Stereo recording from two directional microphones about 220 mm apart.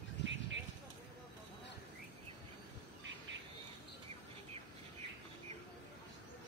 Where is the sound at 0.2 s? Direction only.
55° right (ahead or behind).